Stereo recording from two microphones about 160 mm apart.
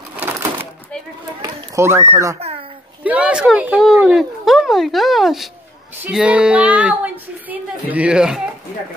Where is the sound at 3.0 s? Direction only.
10° right (ahead or behind).